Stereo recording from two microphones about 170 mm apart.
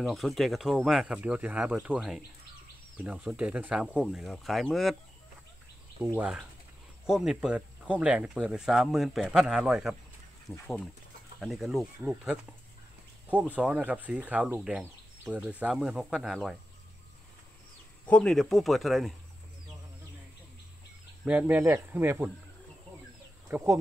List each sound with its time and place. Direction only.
0.0 s speech: centre (ahead or behind)
6.1 s speech: 5° right (ahead or behind)
10.5 s speech: 10° left (ahead or behind)
11.3 s speech: centre (ahead or behind)
18.0 s speech: 5° left (ahead or behind)
21.2 s speech: 10° right (ahead or behind)
23.5 s speech: 15° right (ahead or behind)